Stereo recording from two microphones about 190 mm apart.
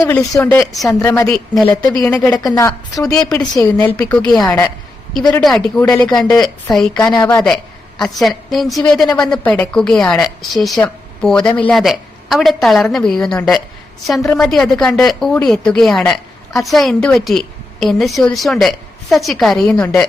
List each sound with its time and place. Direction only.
0.0 s a woman's voice: 20° left (ahead or behind)
3.2 s a woman's voice: 5° left (ahead or behind)
3.5 s speech: 20° left (ahead or behind)
3.8 s a woman's voice: 10° left (ahead or behind)
7.1 s speech: 20° left (ahead or behind)
7.3 s a woman's voice: 5° left (ahead or behind)